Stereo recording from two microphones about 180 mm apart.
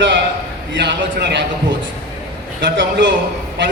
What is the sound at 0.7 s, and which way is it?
A man's voice, 75° right (ahead or behind).